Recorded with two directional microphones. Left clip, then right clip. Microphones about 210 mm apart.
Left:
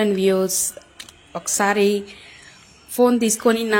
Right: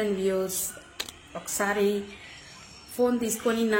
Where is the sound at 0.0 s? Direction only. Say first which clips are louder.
Left 8 dB; 45° left (ahead or behind).